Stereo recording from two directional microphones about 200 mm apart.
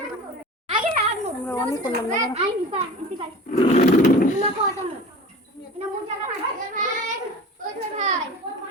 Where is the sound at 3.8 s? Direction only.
40° left (ahead or behind).